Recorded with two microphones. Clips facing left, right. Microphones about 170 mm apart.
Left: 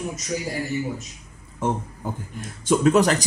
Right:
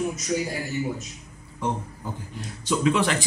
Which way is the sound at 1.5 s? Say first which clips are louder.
Left 3 dB; 50° left (ahead or behind).